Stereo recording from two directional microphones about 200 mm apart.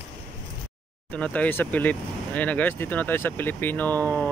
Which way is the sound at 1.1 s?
5° left (ahead or behind).